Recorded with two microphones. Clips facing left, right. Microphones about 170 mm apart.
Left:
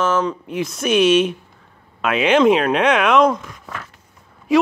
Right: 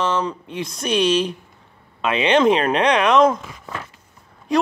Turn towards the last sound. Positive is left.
turn(degrees=5)  # may be behind; listen again after turning